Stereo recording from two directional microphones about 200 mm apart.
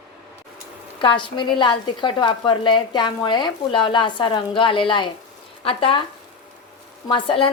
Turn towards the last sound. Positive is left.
turn(degrees=25)  # may be behind; listen again after turning